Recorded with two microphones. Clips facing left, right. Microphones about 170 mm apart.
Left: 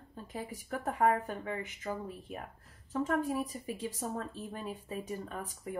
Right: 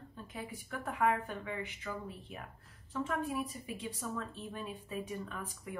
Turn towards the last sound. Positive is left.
turn(degrees=40)  # may be behind; listen again after turning